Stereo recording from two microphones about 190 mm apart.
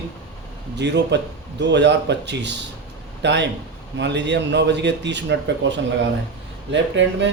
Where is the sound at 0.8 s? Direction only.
65° right (ahead or behind).